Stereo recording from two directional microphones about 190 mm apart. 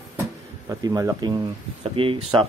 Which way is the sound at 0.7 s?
20° right (ahead or behind).